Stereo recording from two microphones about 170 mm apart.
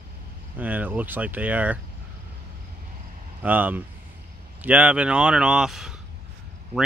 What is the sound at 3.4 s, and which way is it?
Speech, 10° right (ahead or behind).